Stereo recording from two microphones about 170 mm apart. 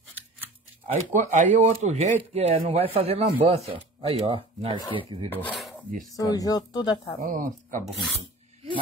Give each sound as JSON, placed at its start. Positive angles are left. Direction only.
{"t": 0.8, "sound": "speech", "side_deg": -40}
{"t": 5.3, "sound": "cutlery", "side_deg": 10}
{"t": 5.6, "sound": "filing", "side_deg": 0}
{"t": 6.1, "sound": "speech", "side_deg": 20}
{"t": 7.2, "sound": "speech", "side_deg": -50}